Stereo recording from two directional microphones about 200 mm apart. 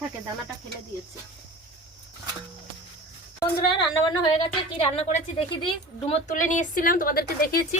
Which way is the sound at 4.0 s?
20° left (ahead or behind).